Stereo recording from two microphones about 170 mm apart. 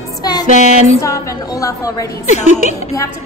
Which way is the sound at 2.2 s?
45° left (ahead or behind).